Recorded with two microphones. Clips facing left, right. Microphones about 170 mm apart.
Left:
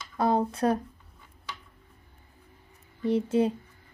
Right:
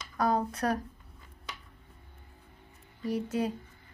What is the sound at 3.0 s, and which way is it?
Speech, 25° left (ahead or behind).